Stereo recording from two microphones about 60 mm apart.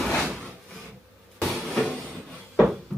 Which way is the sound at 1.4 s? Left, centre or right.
Centre.